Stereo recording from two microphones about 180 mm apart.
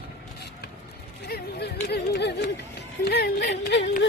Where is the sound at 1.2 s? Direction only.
65° left (ahead or behind).